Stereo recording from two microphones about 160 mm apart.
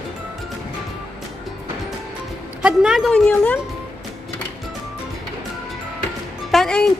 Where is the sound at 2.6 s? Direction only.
5° right (ahead or behind).